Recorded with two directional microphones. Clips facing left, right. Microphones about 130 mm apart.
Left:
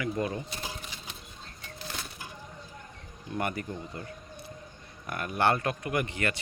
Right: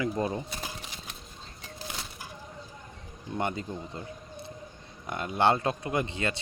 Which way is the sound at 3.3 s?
20° right (ahead or behind).